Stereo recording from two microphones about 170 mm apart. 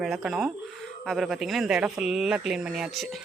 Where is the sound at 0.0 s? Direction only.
5° right (ahead or behind).